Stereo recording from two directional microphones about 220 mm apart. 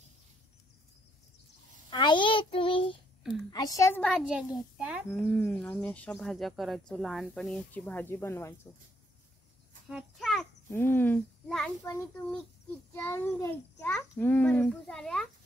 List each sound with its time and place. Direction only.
1.9 s a child's voice: 20° left (ahead or behind); by 5.2 s 5° right (ahead or behind)
5.4 s speech: 5° left (ahead or behind)
9.8 s a sound: centre (ahead or behind)
10.7 s a child's voice: 10° left (ahead or behind)